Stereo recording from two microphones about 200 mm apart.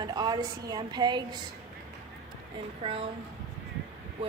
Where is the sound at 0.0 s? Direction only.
20° right (ahead or behind).